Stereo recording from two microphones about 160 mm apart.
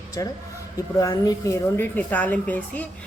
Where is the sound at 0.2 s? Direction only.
20° left (ahead or behind).